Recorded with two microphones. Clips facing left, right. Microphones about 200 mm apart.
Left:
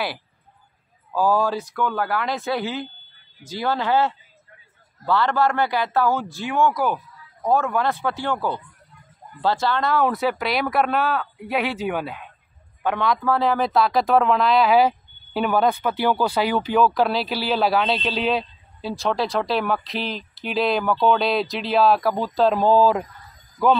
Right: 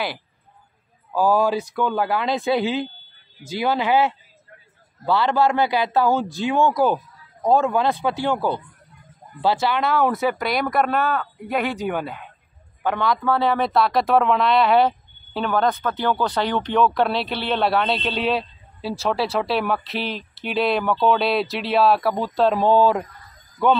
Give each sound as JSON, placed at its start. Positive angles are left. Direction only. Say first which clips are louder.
{"t": 1.1, "sound": "a man's voice", "louder": "right 2 dB", "side_deg": -10}